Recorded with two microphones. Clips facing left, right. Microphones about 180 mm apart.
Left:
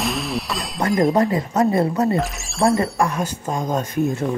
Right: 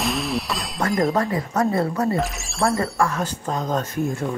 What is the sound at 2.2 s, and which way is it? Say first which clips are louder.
Speech: left 3 dB; centre (ahead or behind).